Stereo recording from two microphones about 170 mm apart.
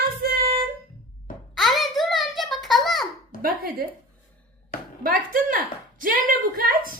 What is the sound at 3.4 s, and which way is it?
Speech, 60° right (ahead or behind).